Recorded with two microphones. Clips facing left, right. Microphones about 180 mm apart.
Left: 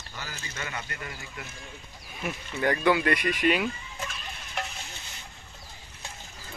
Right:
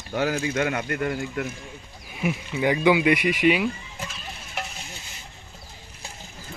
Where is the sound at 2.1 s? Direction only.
10° right (ahead or behind).